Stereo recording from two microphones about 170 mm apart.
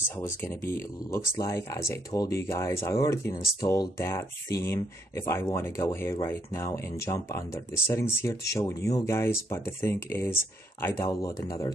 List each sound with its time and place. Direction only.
0.2 s speech: 15° left (ahead or behind)